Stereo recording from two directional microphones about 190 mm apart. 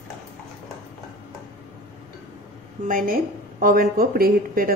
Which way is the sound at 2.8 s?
50° right (ahead or behind).